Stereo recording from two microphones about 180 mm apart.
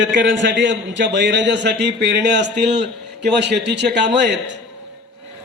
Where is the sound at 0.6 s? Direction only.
80° right.